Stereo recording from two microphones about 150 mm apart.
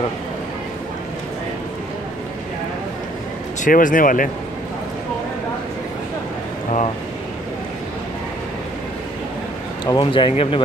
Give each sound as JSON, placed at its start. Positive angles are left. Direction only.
{"t": 3.6, "sound": "speech", "side_deg": 60}
{"t": 9.8, "sound": "speech", "side_deg": 30}